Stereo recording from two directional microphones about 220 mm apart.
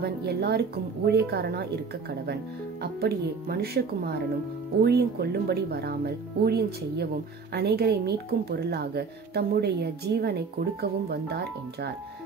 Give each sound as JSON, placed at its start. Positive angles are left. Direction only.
{"t": 0.0, "sound": "a woman's voice", "side_deg": -45}